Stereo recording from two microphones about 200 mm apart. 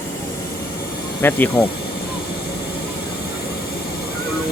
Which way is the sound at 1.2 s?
10° left (ahead or behind).